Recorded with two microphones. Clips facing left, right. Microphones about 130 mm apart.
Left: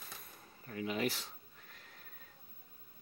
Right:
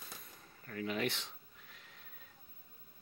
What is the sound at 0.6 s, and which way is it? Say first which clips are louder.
Speech: left 1 dB; 10° left (ahead or behind).